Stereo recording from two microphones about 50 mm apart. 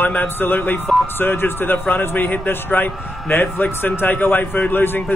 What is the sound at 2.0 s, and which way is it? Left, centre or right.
A man's voice, left.